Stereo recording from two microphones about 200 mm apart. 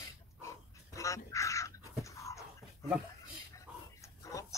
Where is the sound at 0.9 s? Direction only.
15° left (ahead or behind).